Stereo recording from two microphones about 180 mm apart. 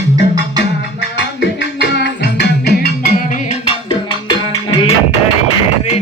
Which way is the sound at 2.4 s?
60° left (ahead or behind).